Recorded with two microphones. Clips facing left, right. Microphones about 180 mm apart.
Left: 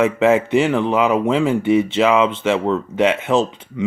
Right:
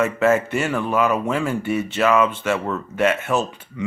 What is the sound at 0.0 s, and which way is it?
Speech, 15° left (ahead or behind).